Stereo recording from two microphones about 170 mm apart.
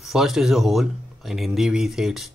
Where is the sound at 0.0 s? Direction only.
Centre (ahead or behind).